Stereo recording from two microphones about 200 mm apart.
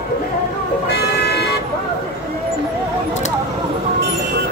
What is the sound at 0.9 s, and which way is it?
Vehicle, 55° left (ahead or behind).